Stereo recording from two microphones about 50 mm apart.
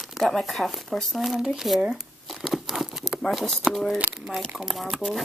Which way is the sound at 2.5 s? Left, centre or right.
Centre.